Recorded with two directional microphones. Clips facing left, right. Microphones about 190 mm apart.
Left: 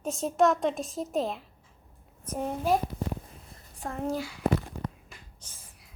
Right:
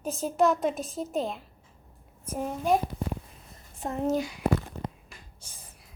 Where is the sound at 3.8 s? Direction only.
20° right (ahead or behind).